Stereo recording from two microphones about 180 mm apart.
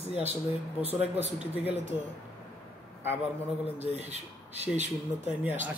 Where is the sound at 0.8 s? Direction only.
35° right (ahead or behind).